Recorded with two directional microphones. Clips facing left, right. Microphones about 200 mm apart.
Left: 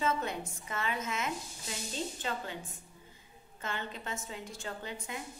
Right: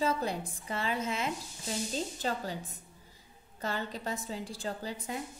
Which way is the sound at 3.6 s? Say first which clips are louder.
Right 4 dB; 35° right (ahead or behind).